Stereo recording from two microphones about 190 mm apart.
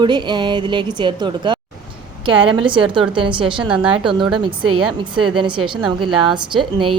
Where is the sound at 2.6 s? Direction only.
25° right (ahead or behind).